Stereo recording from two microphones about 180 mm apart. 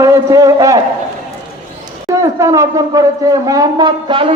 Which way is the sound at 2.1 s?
15° right (ahead or behind).